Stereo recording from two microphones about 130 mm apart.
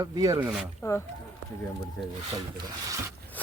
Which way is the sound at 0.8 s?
20° left (ahead or behind).